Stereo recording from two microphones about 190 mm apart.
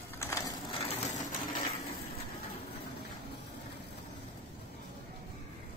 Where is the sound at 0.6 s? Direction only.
30° left (ahead or behind).